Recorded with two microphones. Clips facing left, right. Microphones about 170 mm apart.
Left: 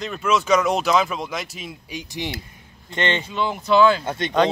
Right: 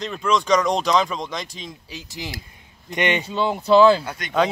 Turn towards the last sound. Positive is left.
turn(degrees=25)  # may be behind; listen again after turning